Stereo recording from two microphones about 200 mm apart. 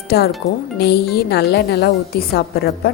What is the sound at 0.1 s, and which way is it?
A woman's voice, 50° left (ahead or behind).